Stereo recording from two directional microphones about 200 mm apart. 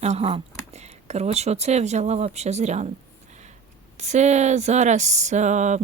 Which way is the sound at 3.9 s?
35° right (ahead or behind).